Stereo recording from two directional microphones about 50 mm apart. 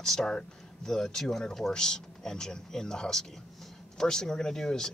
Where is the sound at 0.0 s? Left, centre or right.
Centre.